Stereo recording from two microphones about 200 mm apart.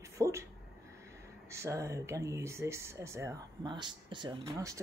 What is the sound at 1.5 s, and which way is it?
Speech, 15° right (ahead or behind).